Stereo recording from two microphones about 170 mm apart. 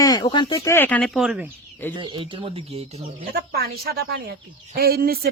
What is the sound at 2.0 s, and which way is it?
Speech, 30° right (ahead or behind).